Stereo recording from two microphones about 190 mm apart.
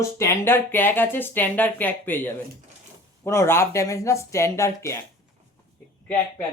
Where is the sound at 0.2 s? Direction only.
10° left (ahead or behind).